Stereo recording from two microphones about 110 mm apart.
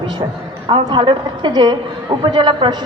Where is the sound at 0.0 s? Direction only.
45° right (ahead or behind).